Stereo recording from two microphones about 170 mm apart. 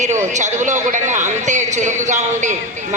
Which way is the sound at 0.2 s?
45° right (ahead or behind).